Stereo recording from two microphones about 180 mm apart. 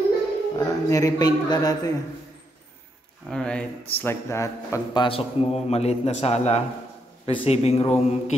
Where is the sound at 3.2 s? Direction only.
5° left (ahead or behind).